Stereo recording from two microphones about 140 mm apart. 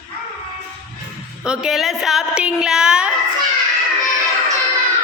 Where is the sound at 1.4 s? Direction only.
5° right (ahead or behind).